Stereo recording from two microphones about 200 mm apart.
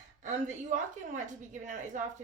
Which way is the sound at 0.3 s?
40° right (ahead or behind).